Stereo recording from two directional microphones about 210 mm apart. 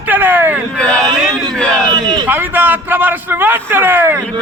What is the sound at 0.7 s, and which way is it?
A man's voice, 5° left (ahead or behind).